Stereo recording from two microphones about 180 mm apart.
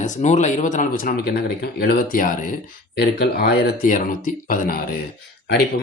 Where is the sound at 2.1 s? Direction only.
50° left (ahead or behind).